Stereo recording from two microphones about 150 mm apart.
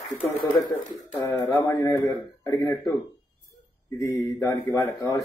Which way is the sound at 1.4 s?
25° left (ahead or behind).